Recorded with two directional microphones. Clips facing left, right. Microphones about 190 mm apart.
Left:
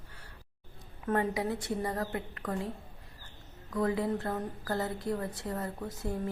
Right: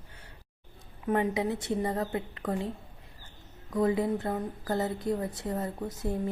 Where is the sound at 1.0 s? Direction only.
15° right (ahead or behind).